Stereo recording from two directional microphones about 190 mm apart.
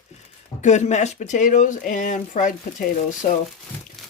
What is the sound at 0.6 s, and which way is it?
Speech, 40° left (ahead or behind).